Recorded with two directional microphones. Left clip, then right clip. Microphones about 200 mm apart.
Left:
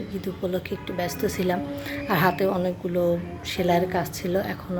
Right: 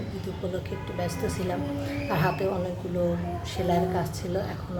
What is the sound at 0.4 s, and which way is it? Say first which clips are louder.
A woman's voice: left 5 dB; 45° left (ahead or behind).